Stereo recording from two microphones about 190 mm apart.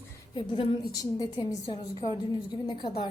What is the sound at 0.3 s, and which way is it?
A woman's voice, 30° left (ahead or behind).